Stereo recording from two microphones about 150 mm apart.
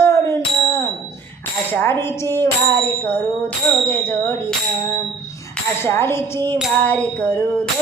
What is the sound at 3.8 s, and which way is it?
Music, 15° left (ahead or behind).